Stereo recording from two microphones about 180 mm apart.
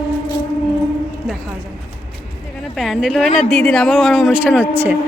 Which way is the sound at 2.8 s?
Centre (ahead or behind).